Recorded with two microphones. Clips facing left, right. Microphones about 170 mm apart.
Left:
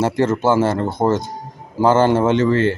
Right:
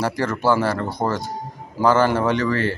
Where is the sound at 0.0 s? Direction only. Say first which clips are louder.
Left 5 dB; 25° left (ahead or behind).